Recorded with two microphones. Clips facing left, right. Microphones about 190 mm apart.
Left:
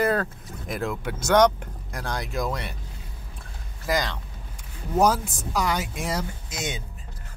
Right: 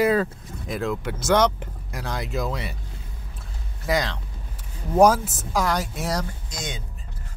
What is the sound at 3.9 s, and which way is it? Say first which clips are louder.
Speech: right 2 dB; centre (ahead or behind).